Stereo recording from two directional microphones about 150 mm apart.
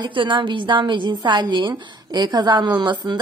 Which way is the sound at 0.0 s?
35° right (ahead or behind).